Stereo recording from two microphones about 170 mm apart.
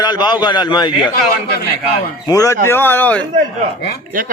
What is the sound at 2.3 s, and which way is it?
Speech, 20° left (ahead or behind).